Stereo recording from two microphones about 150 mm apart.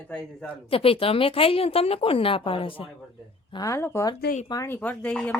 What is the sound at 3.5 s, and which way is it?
A woman's voice, 20° left (ahead or behind).